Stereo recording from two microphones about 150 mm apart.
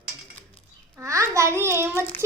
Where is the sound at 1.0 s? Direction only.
20° right (ahead or behind).